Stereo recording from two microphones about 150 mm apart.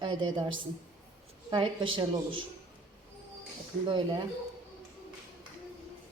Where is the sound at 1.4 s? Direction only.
30° right (ahead or behind).